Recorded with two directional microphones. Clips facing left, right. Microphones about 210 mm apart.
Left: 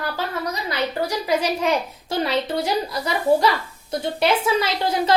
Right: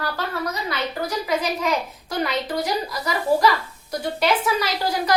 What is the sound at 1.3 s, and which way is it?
A woman's voice, 30° left (ahead or behind).